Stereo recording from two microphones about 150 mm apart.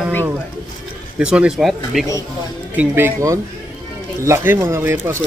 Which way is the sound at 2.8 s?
15° right (ahead or behind).